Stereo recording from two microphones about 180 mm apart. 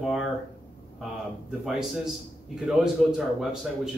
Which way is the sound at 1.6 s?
Centre (ahead or behind).